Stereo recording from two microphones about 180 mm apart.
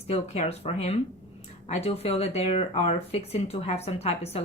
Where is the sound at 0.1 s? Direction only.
35° left (ahead or behind).